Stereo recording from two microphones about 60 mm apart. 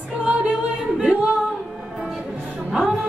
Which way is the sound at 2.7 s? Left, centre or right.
Centre.